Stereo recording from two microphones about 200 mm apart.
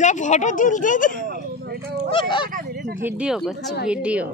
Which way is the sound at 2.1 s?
25° left (ahead or behind).